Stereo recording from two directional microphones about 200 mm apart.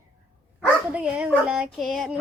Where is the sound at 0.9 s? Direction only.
5° right (ahead or behind).